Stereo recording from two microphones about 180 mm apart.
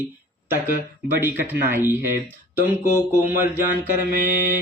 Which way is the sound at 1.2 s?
10° right (ahead or behind).